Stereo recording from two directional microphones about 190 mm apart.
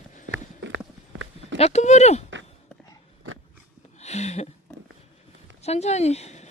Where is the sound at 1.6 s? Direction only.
35° left (ahead or behind).